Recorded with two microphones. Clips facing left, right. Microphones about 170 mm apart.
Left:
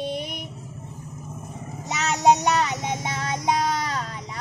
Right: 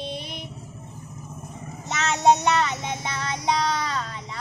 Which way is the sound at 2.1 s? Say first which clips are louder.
Even; 15° left (ahead or behind).